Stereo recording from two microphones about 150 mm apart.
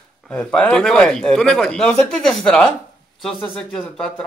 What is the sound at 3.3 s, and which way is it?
Speech, 35° left (ahead or behind).